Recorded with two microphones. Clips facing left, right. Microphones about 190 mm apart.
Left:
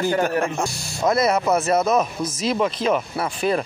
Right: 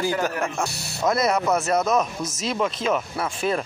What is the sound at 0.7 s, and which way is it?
Speech, 65° right (ahead or behind).